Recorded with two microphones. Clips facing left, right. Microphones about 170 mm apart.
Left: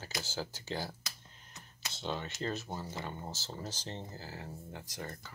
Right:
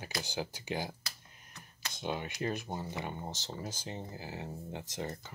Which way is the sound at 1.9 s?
15° right (ahead or behind).